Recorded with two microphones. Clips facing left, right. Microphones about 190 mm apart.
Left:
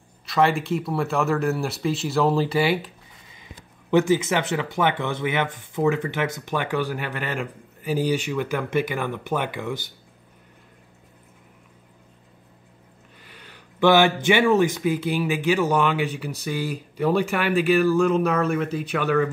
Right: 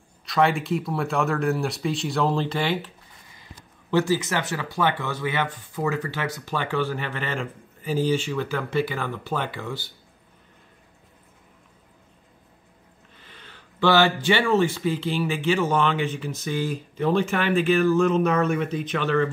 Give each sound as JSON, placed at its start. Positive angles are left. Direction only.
{"t": 0.3, "sound": "speech", "side_deg": 0}
{"t": 3.9, "sound": "speech", "side_deg": 20}
{"t": 13.2, "sound": "speech", "side_deg": 10}